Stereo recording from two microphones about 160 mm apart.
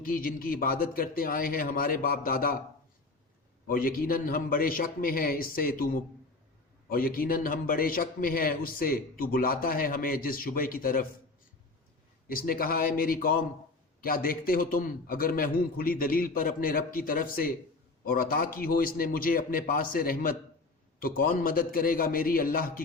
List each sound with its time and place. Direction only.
0.0 s a man's voice: 60° left (ahead or behind)
3.7 s a man's voice: 65° left (ahead or behind)
12.3 s a man's voice: 65° left (ahead or behind)